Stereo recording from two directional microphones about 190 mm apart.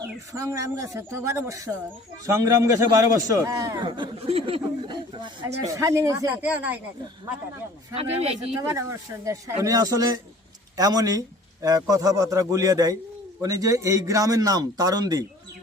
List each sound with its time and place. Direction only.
0.0 s a man's voice: 15° right (ahead or behind)
7.9 s speech: 30° right (ahead or behind)
8.7 s a man's voice: 15° right (ahead or behind)